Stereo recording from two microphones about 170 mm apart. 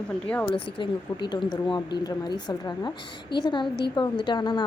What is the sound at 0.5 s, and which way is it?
A woman's voice, 30° left (ahead or behind).